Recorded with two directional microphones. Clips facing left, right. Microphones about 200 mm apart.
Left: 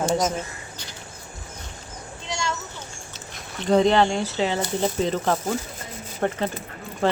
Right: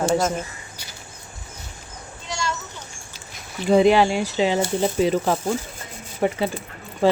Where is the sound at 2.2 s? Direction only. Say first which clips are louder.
Right 1 dB; 20° left (ahead or behind).